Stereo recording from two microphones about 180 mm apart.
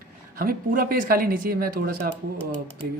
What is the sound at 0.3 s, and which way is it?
Speech, 55° right (ahead or behind).